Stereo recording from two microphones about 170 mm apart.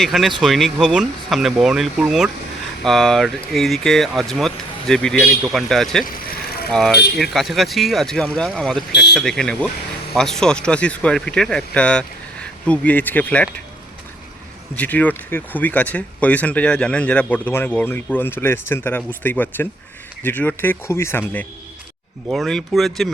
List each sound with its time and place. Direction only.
0.0 s speech: centre (ahead or behind)
6.1 s vehicle: 60° left (ahead or behind)
6.7 s speech: 5° left (ahead or behind)
14.8 s speech: 10° left (ahead or behind)
22.3 s speech: centre (ahead or behind)